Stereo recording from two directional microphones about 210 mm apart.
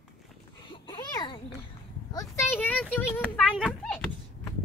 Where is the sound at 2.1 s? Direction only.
15° left (ahead or behind).